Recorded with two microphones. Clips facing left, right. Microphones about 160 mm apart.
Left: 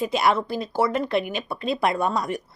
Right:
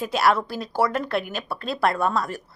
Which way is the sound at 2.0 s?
15° left (ahead or behind).